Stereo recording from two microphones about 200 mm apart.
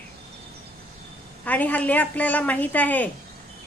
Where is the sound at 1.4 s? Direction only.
10° left (ahead or behind).